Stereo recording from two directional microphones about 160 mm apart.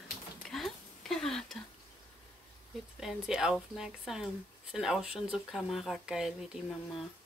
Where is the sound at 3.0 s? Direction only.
5° right (ahead or behind).